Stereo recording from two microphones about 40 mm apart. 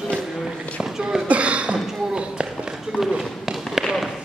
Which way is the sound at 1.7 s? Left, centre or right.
Centre.